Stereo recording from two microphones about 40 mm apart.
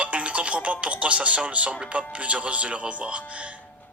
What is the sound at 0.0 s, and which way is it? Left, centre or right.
Speech, right.